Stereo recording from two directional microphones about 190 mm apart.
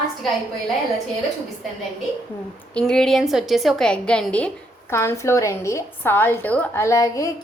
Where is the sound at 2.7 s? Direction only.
5° left (ahead or behind).